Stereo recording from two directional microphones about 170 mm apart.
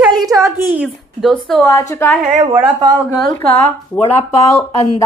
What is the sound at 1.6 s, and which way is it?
Speech, 20° left (ahead or behind).